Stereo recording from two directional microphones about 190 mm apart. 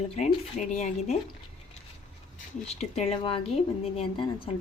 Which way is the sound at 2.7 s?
35° left (ahead or behind).